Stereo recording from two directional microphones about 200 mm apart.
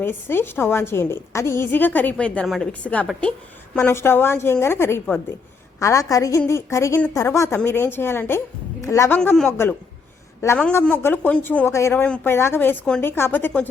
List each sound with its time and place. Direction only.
0.0 s a woman's voice: 10° left (ahead or behind)